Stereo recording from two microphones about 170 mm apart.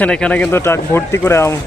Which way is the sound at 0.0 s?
5° left (ahead or behind).